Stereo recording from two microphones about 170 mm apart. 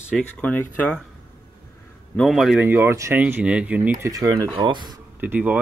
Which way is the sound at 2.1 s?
Centre (ahead or behind).